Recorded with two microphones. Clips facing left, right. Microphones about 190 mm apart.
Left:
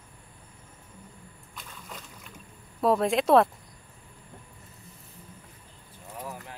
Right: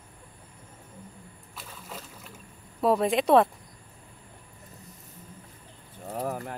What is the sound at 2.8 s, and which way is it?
Speech, centre (ahead or behind).